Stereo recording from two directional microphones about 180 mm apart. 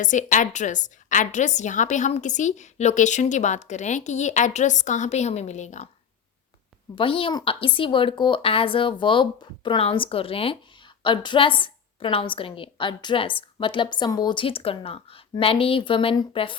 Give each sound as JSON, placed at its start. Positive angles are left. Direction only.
{"t": 0.0, "sound": "a woman's voice", "side_deg": 45}
{"t": 6.9, "sound": "a woman's voice", "side_deg": 30}